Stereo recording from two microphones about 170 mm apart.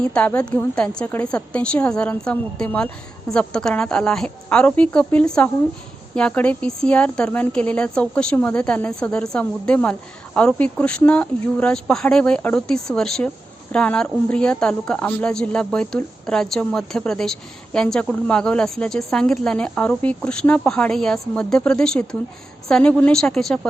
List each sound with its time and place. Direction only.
0.0 s a woman's voice: 5° left (ahead or behind)